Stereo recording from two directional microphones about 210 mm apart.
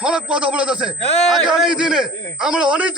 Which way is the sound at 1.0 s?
30° left (ahead or behind).